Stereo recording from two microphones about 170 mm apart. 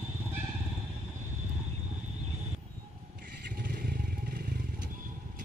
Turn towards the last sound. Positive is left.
turn(degrees=-60)  # may be behind; listen again after turning